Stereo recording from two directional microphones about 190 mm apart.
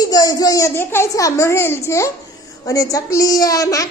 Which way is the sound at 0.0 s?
20° left (ahead or behind).